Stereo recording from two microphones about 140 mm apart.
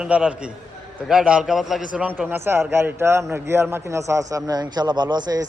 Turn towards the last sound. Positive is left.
turn(degrees=-30)  # may be behind; listen again after turning